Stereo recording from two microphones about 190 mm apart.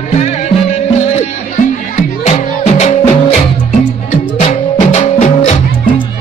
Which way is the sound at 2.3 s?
35° left (ahead or behind).